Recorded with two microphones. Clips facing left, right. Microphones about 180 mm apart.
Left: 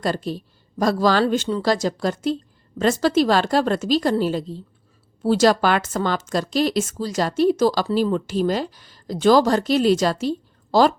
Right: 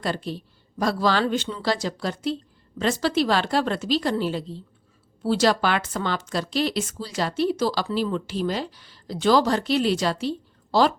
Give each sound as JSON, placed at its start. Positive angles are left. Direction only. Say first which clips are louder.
{"t": 0.0, "sound": "speech", "louder": "left 4 dB", "side_deg": 40}